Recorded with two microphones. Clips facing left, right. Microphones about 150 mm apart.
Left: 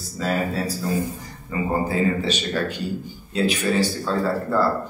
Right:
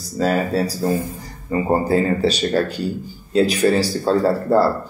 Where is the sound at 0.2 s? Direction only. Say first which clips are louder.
Right 5 dB; 40° right (ahead or behind).